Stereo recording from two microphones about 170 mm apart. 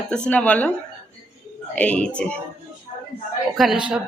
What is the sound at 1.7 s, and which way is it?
Speech, 10° left (ahead or behind).